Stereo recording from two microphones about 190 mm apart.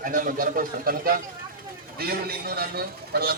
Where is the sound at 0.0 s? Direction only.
45° right (ahead or behind).